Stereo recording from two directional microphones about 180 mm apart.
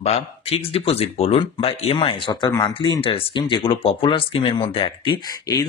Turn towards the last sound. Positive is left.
turn(degrees=20)  # may be behind; listen again after turning